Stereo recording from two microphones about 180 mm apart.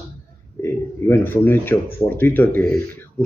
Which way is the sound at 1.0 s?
10° left (ahead or behind).